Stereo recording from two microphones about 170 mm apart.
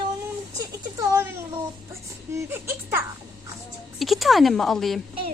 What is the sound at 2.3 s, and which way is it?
Speech, 15° right (ahead or behind).